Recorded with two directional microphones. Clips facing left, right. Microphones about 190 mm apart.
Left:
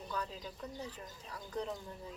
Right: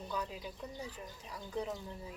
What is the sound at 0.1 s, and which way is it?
Speech, 10° right (ahead or behind).